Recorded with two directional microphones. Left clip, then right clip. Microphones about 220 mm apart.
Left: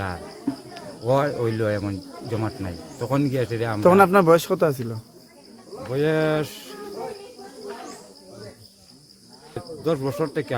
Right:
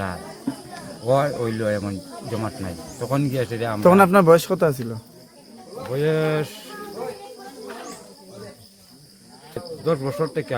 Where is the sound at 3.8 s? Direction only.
Centre (ahead or behind).